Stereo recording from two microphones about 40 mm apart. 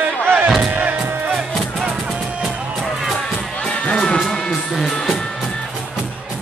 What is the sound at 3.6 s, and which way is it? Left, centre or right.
Music, left.